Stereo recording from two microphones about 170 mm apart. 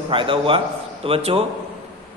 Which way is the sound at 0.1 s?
30° right (ahead or behind).